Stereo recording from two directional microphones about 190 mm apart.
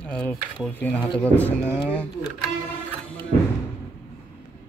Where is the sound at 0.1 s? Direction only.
5° left (ahead or behind).